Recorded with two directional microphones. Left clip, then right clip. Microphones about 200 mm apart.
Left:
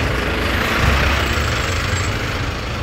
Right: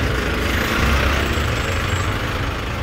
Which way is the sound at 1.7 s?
45° right (ahead or behind).